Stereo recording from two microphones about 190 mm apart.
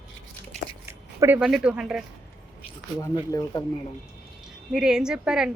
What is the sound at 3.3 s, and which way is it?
Speech, 20° left (ahead or behind).